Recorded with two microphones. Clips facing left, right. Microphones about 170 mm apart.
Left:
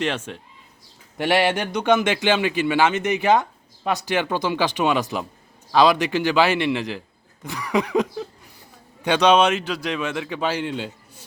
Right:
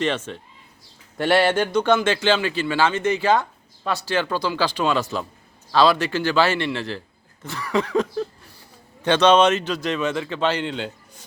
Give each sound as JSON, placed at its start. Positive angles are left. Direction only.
{"t": 0.0, "sound": "a man's voice", "side_deg": 10}
{"t": 7.4, "sound": "a sound", "side_deg": 15}
{"t": 9.0, "sound": "a man's voice", "side_deg": 10}